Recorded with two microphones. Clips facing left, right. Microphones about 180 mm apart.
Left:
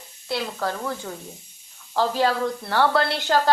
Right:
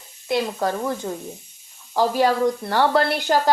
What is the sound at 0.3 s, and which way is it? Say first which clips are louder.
A woman's voice: right 5 dB; 15° right (ahead or behind).